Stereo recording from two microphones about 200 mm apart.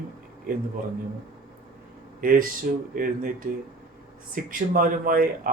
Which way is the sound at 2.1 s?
45° right (ahead or behind).